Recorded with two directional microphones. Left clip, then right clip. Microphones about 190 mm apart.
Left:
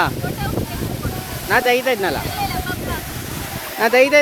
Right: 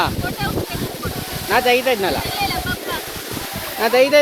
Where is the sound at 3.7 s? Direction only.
40° left (ahead or behind).